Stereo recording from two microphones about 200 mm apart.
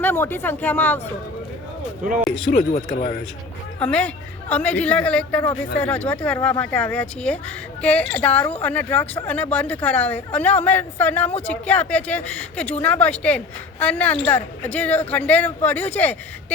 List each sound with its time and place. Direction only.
0.0 s a woman's voice: 10° left (ahead or behind)
2.5 s speech: 45° left (ahead or behind)
3.8 s a woman's voice: 5° left (ahead or behind)